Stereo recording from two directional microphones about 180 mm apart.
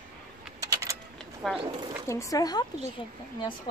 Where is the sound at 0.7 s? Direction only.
15° right (ahead or behind).